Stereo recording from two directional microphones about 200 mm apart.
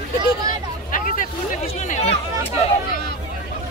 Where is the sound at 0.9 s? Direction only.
40° left (ahead or behind).